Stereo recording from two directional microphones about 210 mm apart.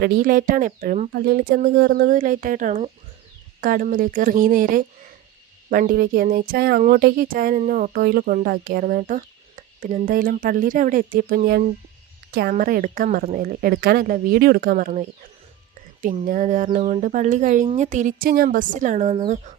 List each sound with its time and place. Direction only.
0.0 s a woman's voice: 45° right (ahead or behind)
16.2 s speech: 40° right (ahead or behind)